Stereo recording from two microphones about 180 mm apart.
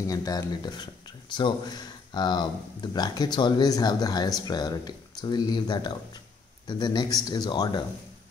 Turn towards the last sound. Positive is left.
turn(degrees=20)  # may be behind; listen again after turning